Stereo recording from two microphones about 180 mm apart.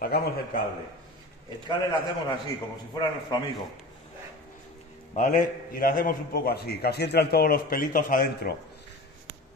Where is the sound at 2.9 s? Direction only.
20° left (ahead or behind).